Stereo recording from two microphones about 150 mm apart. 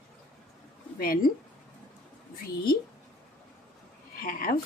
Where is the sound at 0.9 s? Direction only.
75° left (ahead or behind).